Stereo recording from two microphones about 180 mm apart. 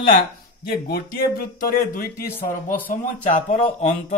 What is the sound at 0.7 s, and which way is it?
Speech, 60° left (ahead or behind).